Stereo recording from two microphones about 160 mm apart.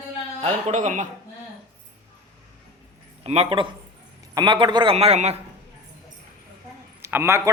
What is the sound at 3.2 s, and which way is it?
A man's voice, 35° right (ahead or behind).